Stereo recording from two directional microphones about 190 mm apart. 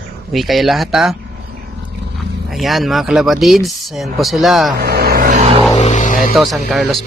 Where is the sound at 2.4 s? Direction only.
Centre (ahead or behind).